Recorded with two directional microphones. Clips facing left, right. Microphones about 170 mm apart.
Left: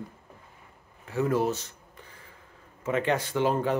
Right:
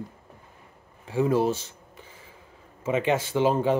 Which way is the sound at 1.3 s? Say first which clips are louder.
Right 3 dB; 30° right (ahead or behind).